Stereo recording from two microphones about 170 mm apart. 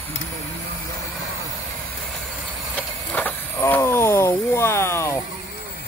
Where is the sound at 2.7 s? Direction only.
10° left (ahead or behind).